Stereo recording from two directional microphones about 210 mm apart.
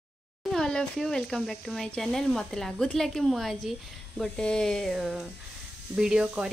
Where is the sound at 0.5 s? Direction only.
5° left (ahead or behind).